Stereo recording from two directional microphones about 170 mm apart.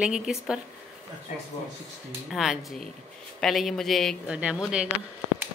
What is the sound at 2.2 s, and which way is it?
A woman's voice, centre (ahead or behind).